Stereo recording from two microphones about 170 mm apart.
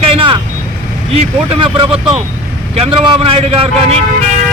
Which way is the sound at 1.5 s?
35° right (ahead or behind).